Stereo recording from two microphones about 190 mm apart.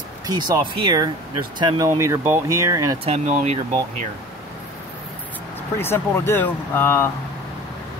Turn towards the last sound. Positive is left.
turn(degrees=10)  # may be behind; listen again after turning